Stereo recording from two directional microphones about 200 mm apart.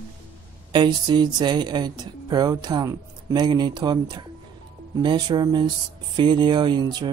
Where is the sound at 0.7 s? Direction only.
20° right (ahead or behind).